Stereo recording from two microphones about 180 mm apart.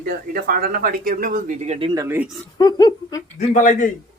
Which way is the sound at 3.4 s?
45° left (ahead or behind).